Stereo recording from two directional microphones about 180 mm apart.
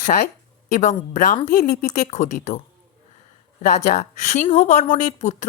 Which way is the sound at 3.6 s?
40° left (ahead or behind).